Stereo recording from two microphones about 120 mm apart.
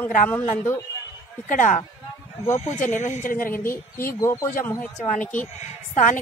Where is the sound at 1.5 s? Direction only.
90° left.